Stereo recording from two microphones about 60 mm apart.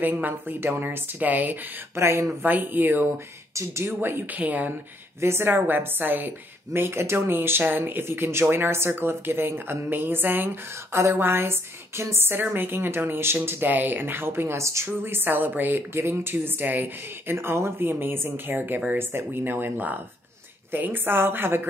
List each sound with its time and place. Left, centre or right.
0.0 s a woman's voice: right
2.0 s speech: right
2.4 s a woman's voice: right
5.2 s a woman's voice: right
15.9 s a woman's voice: right